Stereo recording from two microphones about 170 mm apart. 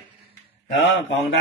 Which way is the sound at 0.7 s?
90° left.